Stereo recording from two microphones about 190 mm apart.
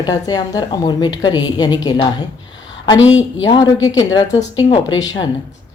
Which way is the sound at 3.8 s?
20° left (ahead or behind).